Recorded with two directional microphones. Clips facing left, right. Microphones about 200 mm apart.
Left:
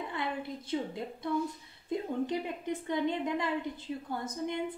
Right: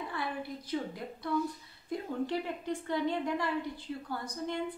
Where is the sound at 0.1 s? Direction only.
20° left (ahead or behind).